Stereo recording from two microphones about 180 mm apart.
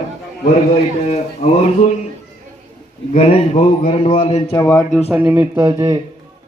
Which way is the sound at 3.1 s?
35° left (ahead or behind).